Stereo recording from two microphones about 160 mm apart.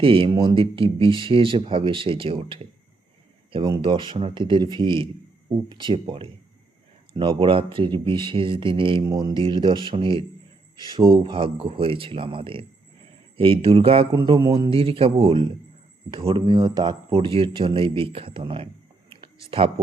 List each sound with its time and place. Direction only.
0.0 s speech: 35° right (ahead or behind)
14.1 s speech: 25° right (ahead or behind)